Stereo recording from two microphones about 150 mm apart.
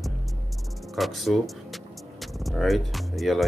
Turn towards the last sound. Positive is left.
turn(degrees=0)  # may be behind; listen again after turning